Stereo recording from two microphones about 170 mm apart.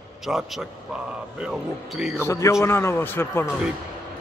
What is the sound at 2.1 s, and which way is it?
A man's voice, 15° left (ahead or behind).